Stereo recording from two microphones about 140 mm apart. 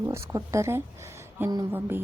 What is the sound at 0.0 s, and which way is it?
A woman's voice, 20° right (ahead or behind).